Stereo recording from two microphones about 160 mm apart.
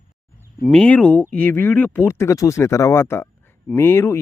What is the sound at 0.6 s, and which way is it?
Speech, 5° left (ahead or behind).